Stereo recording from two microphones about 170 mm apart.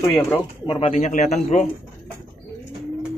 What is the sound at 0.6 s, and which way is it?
Speech, 40° left (ahead or behind).